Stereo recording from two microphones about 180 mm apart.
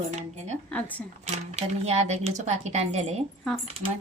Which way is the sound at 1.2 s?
40° right (ahead or behind).